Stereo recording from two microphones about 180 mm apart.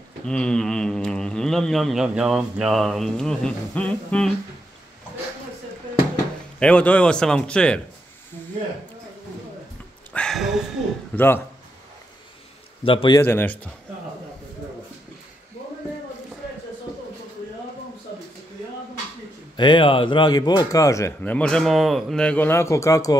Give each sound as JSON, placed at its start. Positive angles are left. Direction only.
{"t": 0.3, "sound": "speech", "side_deg": 5}
{"t": 6.6, "sound": "speech", "side_deg": 5}
{"t": 10.1, "sound": "a sound", "side_deg": 0}
{"t": 11.1, "sound": "speech", "side_deg": 10}
{"t": 12.8, "sound": "a man's voice", "side_deg": 30}
{"t": 13.2, "sound": "speech", "side_deg": 10}
{"t": 19.5, "sound": "speech", "side_deg": 25}